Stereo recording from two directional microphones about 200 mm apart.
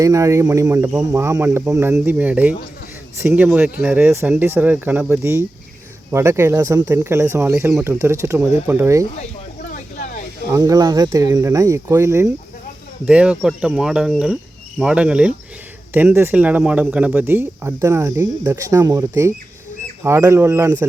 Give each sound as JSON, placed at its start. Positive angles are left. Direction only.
{"t": 0.0, "sound": "speech", "side_deg": -15}
{"t": 9.6, "sound": "a sound", "side_deg": 40}
{"t": 10.5, "sound": "speech", "side_deg": -15}